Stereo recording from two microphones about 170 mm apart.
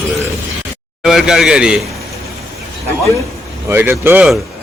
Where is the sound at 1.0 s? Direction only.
5° right (ahead or behind).